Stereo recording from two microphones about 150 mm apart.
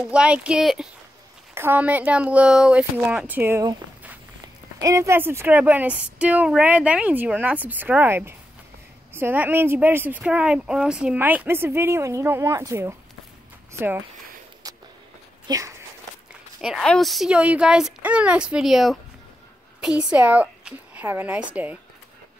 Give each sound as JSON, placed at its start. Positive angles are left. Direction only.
{"t": 0.0, "sound": "a woman's voice", "side_deg": -5}
{"t": 1.5, "sound": "a woman's voice", "side_deg": -15}
{"t": 4.7, "sound": "a woman's voice", "side_deg": -20}
{"t": 15.4, "sound": "speech", "side_deg": -20}
{"t": 16.6, "sound": "a woman's voice", "side_deg": 0}